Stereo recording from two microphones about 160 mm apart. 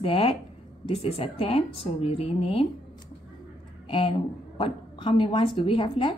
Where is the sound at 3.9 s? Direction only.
30° left (ahead or behind).